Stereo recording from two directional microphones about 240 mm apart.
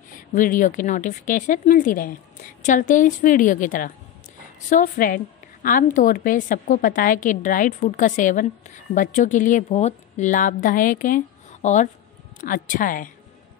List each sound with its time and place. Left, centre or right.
0.3 s a woman's voice: left